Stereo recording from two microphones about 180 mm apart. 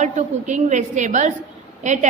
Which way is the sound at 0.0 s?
45° right (ahead or behind).